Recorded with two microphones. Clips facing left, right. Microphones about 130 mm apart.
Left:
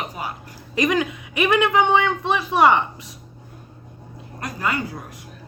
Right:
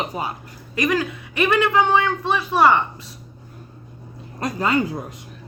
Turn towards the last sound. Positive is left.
turn(degrees=-25)  # may be behind; listen again after turning